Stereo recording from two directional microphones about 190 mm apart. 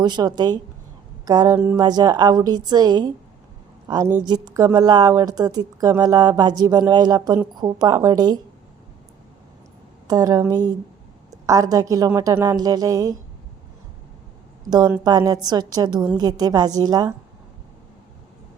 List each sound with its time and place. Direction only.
0.0 s a woman's voice: 20° right (ahead or behind)
10.1 s a woman's voice: 20° right (ahead or behind)
15.0 s a woman's voice: 20° right (ahead or behind)